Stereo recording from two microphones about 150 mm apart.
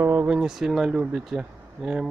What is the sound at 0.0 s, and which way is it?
Speech, 15° right (ahead or behind).